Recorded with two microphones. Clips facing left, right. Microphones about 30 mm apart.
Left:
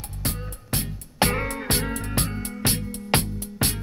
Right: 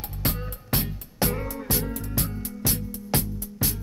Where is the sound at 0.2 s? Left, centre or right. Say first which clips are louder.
Right 2 dB; centre.